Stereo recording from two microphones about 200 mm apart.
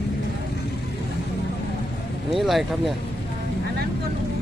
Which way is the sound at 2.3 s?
Centre (ahead or behind).